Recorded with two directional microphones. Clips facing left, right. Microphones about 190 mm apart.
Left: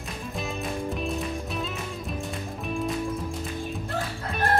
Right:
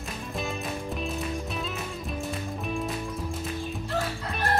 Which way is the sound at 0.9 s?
Centre (ahead or behind).